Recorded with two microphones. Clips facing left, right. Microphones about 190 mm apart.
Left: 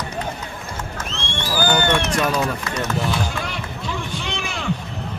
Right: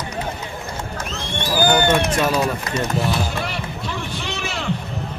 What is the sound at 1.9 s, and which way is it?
Speech, 5° right (ahead or behind).